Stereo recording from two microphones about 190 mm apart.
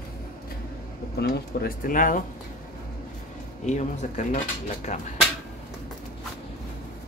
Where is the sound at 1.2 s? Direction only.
50° left (ahead or behind).